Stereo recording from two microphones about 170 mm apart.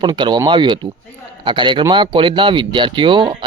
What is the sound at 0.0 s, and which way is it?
Speech, 25° right (ahead or behind).